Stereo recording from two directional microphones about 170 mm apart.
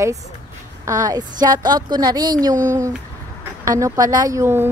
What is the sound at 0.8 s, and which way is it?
A woman's voice, 20° right (ahead or behind).